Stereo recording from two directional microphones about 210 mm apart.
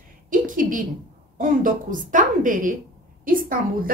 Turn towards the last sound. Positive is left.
turn(degrees=-40)  # may be behind; listen again after turning